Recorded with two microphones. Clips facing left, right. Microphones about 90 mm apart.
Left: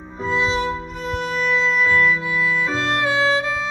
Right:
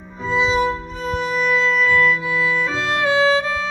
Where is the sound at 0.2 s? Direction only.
Centre (ahead or behind).